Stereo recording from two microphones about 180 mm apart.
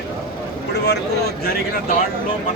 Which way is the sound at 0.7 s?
65° left (ahead or behind).